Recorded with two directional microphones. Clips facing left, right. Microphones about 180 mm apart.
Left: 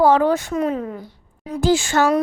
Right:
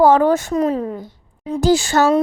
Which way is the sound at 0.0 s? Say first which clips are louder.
Right 3 dB; 45° right (ahead or behind).